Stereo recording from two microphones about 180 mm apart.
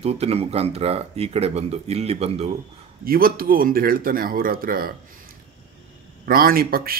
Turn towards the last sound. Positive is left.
turn(degrees=-55)  # may be behind; listen again after turning